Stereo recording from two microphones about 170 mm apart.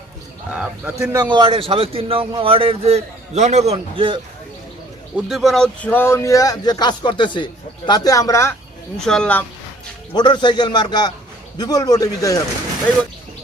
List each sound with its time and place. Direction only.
0.5 s a man's voice: 5° right (ahead or behind)
1.1 s a man's voice: 25° right (ahead or behind)
5.1 s speech: centre (ahead or behind); by 8.5 s 15° left (ahead or behind)
9.0 s speech: 5° left (ahead or behind)
10.1 s speech: 25° left (ahead or behind)